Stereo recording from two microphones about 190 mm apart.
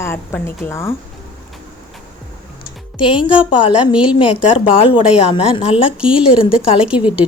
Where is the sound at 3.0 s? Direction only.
25° left (ahead or behind).